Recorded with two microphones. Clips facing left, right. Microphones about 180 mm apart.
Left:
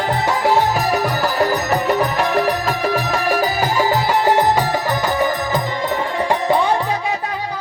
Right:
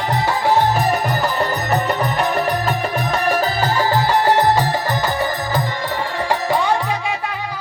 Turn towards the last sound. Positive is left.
turn(degrees=25)  # may be behind; listen again after turning